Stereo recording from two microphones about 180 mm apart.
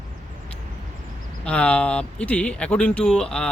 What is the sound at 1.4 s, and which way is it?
Speech, 5° left (ahead or behind).